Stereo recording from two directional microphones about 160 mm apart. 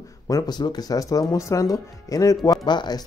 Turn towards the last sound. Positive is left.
turn(degrees=25)  # may be behind; listen again after turning